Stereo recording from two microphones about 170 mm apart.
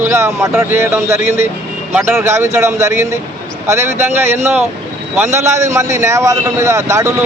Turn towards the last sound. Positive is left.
turn(degrees=-15)  # may be behind; listen again after turning